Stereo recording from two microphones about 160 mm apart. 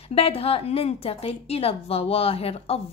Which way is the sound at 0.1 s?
35° left (ahead or behind).